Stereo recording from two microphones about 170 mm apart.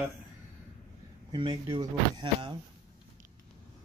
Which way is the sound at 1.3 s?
25° right (ahead or behind).